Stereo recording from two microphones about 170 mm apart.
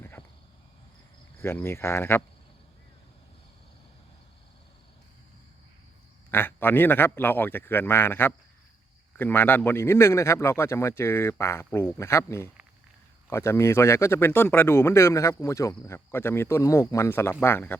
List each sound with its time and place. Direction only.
0.2 s cricket: 30° left (ahead or behind)
1.4 s a man's voice: 15° left (ahead or behind)
6.3 s a man's voice: 10° left (ahead or behind)